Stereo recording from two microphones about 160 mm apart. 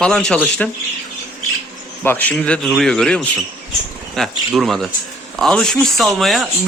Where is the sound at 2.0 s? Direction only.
10° left (ahead or behind).